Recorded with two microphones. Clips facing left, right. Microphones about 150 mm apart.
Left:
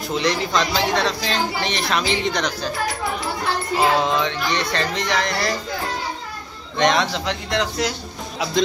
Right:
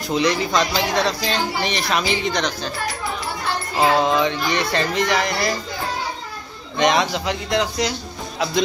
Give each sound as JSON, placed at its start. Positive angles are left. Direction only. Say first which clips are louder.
{"t": 0.1, "sound": "speech", "louder": "right 2 dB", "side_deg": 0}
{"t": 3.7, "sound": "speech", "louder": "right 2 dB", "side_deg": -5}
{"t": 6.8, "sound": "speech", "louder": "right 1 dB", "side_deg": -5}